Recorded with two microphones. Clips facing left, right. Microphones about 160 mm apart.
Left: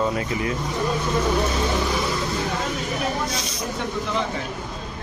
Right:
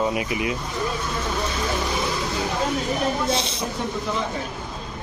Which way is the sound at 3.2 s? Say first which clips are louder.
Right 4 dB; 25° right (ahead or behind).